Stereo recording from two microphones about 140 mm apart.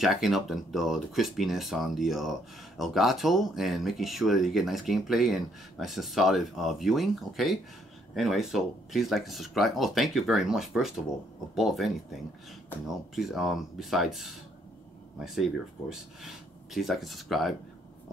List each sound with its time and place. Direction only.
0.0 s speech: centre (ahead or behind)